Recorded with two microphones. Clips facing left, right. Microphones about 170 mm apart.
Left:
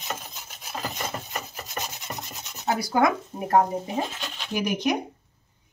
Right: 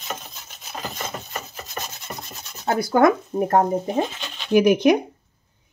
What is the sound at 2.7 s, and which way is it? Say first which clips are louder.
Speech: right 5 dB; 50° right (ahead or behind).